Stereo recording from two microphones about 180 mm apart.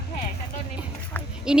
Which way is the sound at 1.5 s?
5° right (ahead or behind).